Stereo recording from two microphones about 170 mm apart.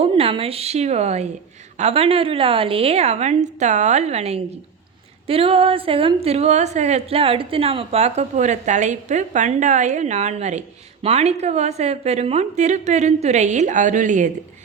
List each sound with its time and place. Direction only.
0.0 s a woman's voice: 35° right (ahead or behind)